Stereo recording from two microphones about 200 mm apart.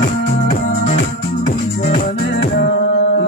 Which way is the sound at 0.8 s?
40° left (ahead or behind).